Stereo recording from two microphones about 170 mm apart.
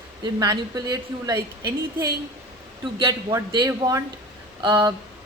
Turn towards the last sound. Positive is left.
turn(degrees=-25)  # may be behind; listen again after turning